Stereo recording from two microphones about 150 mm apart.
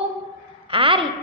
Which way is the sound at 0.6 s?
35° right (ahead or behind).